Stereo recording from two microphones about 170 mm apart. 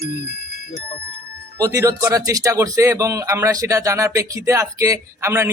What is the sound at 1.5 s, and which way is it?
Speech, 20° right (ahead or behind).